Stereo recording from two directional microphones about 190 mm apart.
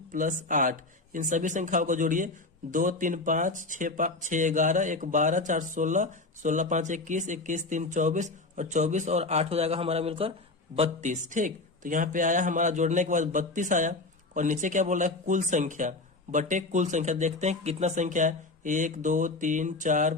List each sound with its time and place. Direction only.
0.1 s speech: 45° right (ahead or behind)